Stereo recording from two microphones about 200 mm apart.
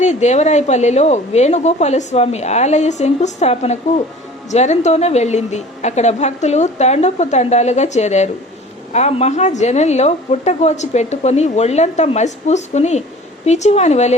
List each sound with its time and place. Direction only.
0.0 s a woman's voice: 35° left (ahead or behind)